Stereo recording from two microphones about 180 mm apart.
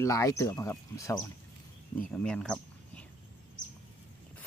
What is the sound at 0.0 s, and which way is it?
Speech, 15° left (ahead or behind).